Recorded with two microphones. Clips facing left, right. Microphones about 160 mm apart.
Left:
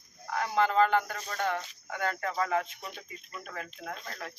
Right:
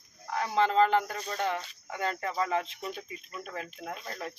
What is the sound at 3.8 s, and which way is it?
Speech, 20° right (ahead or behind).